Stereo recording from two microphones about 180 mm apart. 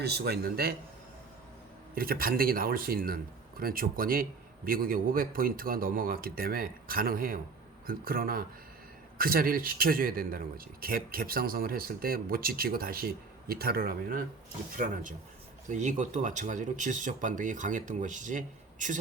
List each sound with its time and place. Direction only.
0.0 s a man's voice: 65° right (ahead or behind)
2.0 s a man's voice: 55° right (ahead or behind)